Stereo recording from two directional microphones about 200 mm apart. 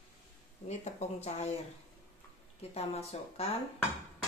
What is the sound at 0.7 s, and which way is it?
Speech, 35° left (ahead or behind).